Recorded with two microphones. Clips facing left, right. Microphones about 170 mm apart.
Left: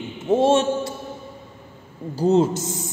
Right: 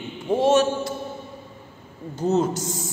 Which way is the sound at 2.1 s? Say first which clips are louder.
Left 4 dB; 30° left (ahead or behind).